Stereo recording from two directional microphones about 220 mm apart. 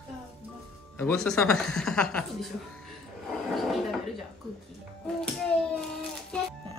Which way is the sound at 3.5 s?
Centre (ahead or behind).